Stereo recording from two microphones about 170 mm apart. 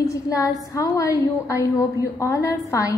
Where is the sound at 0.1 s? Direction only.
20° left (ahead or behind).